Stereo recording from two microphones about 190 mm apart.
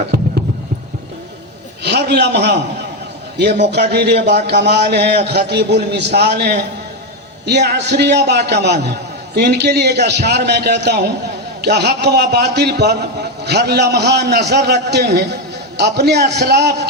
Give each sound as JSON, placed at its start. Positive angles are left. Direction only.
{"t": 1.8, "sound": "a man's voice", "side_deg": -60}